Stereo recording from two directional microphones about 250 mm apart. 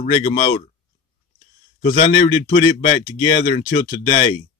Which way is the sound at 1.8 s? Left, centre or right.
Left.